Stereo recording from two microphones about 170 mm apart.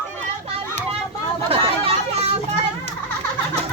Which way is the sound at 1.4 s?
35° right (ahead or behind).